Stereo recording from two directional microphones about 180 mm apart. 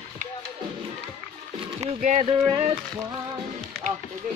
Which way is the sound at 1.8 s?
40° right (ahead or behind).